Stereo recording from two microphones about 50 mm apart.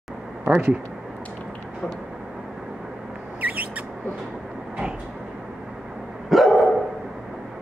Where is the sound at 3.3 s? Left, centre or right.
Right.